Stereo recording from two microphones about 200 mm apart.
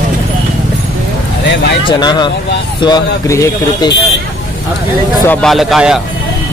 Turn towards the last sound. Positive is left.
turn(degrees=0)  # may be behind; listen again after turning